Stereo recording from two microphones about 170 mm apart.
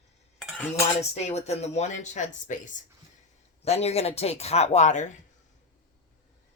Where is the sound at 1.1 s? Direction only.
40° left (ahead or behind).